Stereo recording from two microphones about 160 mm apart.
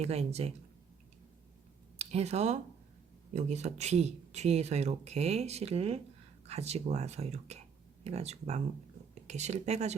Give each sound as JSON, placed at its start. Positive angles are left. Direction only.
{"t": 0.0, "sound": "speech", "side_deg": -40}
{"t": 2.0, "sound": "speech", "side_deg": -40}